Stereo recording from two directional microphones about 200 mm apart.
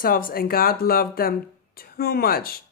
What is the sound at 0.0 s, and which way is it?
Speech, 45° left (ahead or behind).